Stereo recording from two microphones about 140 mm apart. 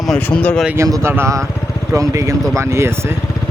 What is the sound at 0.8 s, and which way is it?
Speech, 20° right (ahead or behind).